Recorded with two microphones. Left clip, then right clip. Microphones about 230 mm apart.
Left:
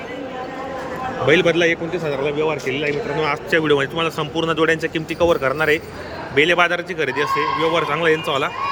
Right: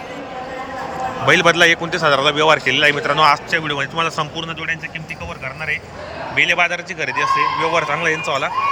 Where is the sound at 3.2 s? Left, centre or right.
Centre.